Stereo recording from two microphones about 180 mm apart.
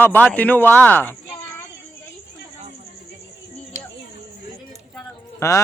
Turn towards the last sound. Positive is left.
turn(degrees=15)  # may be behind; listen again after turning